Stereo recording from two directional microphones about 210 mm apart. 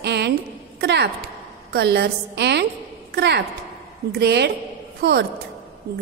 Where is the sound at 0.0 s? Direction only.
50° right (ahead or behind).